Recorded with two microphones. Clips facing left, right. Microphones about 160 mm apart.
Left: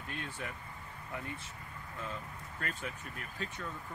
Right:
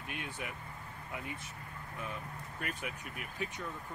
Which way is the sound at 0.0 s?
15° right (ahead or behind).